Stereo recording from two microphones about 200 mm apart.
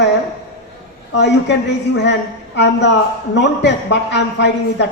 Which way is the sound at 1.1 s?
60° left (ahead or behind).